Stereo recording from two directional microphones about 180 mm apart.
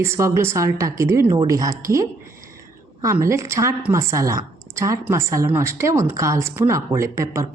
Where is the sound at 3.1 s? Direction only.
15° right (ahead or behind).